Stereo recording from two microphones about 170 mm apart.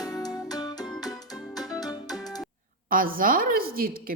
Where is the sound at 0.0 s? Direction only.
20° left (ahead or behind).